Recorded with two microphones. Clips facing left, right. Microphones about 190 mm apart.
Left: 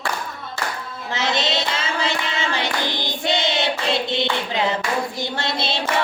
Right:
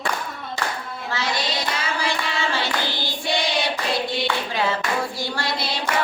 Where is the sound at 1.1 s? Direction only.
20° left (ahead or behind).